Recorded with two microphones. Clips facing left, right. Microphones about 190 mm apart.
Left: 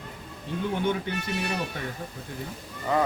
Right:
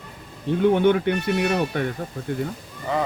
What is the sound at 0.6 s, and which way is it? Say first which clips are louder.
Speech: right 10 dB; 65° right (ahead or behind).